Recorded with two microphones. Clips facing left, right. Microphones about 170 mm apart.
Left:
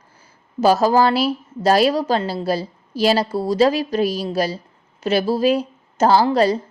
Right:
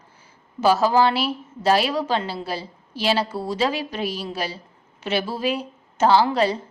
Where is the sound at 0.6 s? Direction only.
40° left (ahead or behind).